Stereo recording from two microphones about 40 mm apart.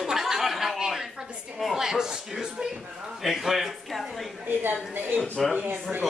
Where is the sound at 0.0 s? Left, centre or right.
Centre.